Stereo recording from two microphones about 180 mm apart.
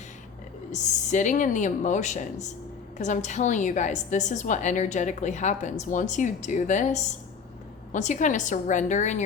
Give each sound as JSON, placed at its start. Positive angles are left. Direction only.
{"t": 0.7, "sound": "a woman's voice", "side_deg": 45}